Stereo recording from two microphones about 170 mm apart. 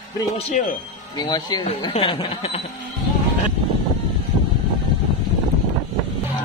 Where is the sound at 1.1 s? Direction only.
25° left (ahead or behind).